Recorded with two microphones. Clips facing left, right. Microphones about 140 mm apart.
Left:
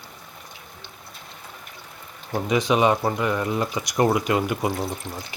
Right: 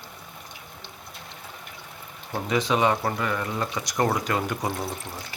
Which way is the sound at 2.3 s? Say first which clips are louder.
Left 3 dB; 15° left (ahead or behind).